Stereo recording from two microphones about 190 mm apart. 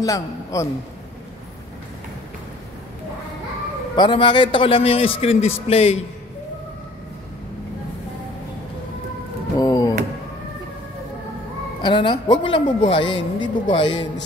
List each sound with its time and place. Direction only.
0.0 s a man's voice: 15° left (ahead or behind)
3.9 s a man's voice: 25° left (ahead or behind)
9.6 s a sound: 20° left (ahead or behind)
11.8 s a man's voice: 25° left (ahead or behind)